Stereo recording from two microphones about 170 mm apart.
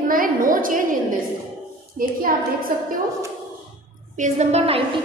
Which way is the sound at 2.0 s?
55° right (ahead or behind).